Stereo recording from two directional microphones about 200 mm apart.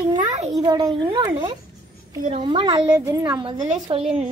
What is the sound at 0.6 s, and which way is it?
A woman's voice, 20° right (ahead or behind).